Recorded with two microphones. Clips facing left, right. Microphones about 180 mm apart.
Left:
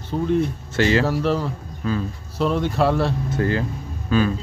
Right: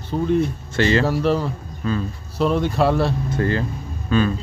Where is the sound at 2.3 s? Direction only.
15° right (ahead or behind).